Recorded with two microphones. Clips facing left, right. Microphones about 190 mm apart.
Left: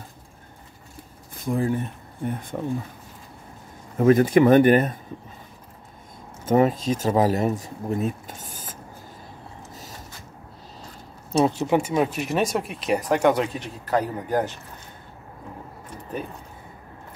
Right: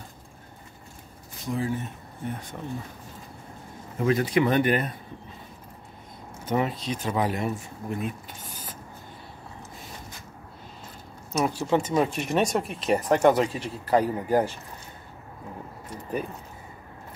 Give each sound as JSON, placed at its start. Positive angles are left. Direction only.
{"t": 1.3, "sound": "speech", "side_deg": 55}
{"t": 4.0, "sound": "speech", "side_deg": 50}
{"t": 6.4, "sound": "speech", "side_deg": 45}
{"t": 11.3, "sound": "speech", "side_deg": 25}
{"t": 11.9, "sound": "speech", "side_deg": 5}